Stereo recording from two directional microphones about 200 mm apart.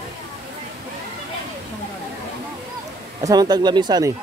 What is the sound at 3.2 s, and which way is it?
Speech, 20° right (ahead or behind).